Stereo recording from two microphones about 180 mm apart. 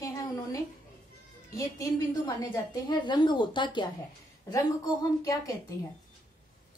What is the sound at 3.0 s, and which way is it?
Speech, 25° left (ahead or behind).